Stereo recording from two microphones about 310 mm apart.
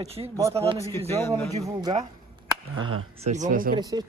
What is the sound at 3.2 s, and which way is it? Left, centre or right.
Speech, right.